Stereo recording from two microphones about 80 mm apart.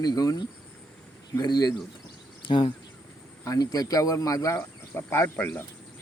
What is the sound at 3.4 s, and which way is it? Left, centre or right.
Speech, left.